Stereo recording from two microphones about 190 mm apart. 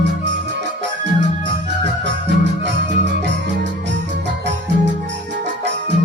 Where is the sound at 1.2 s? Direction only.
65° right (ahead or behind).